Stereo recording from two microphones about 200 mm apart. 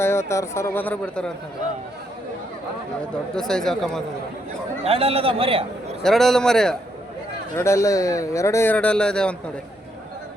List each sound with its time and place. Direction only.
0.0 s speech: 15° left (ahead or behind)
3.3 s speech: centre (ahead or behind)
4.8 s a man's voice: 30° right (ahead or behind)
6.0 s speech: centre (ahead or behind)
7.5 s speech: 15° left (ahead or behind)